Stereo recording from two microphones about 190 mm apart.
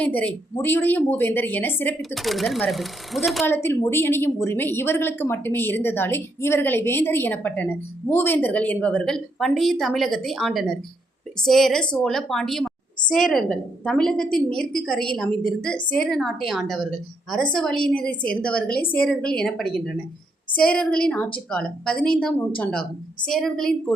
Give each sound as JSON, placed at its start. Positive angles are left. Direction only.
{"t": 0.0, "sound": "a woman's voice", "side_deg": 5}
{"t": 3.4, "sound": "a woman's voice", "side_deg": 10}